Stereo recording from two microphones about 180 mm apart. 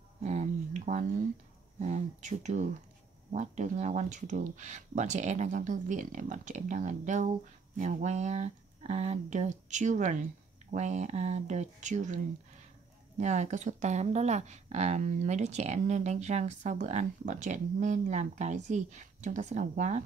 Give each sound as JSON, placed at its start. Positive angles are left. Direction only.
{"t": 0.2, "sound": "a sound", "side_deg": -40}
{"t": 1.8, "sound": "speech", "side_deg": -40}
{"t": 13.2, "sound": "speech", "side_deg": -40}